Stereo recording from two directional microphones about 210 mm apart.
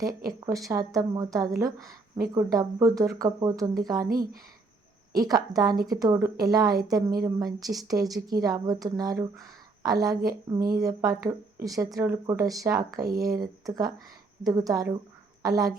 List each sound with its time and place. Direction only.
0.3 s a woman's voice: 15° right (ahead or behind)
5.1 s a woman's voice: 15° right (ahead or behind)